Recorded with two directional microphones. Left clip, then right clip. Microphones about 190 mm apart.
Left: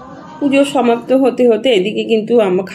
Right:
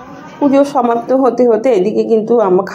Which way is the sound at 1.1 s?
15° left (ahead or behind).